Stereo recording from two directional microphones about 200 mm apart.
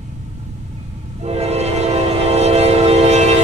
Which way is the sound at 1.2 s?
30° right (ahead or behind).